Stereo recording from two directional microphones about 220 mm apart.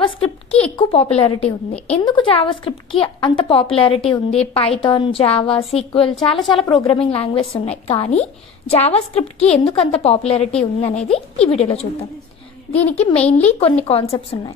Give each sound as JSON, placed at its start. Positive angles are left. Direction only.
{"t": 0.0, "sound": "a woman's voice", "side_deg": 25}
{"t": 6.1, "sound": "a woman's voice", "side_deg": 0}
{"t": 6.5, "sound": "a woman's voice", "side_deg": 20}
{"t": 12.9, "sound": "a woman's voice", "side_deg": 30}